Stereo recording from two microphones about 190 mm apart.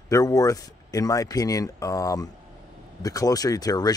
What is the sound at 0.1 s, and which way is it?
Speech, 20° left (ahead or behind).